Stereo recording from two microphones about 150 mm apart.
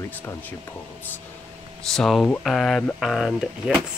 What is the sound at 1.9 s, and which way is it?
Speech, 5° left (ahead or behind).